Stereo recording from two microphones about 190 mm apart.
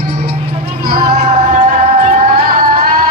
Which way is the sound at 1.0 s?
35° right (ahead or behind).